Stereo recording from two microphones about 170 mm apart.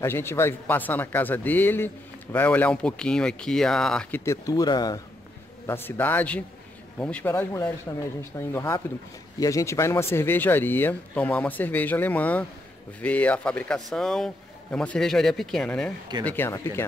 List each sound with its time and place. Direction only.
0.0 s a man's voice: 15° left (ahead or behind)
4.2 s speech: 20° left (ahead or behind)
5.7 s a man's voice: 10° left (ahead or behind)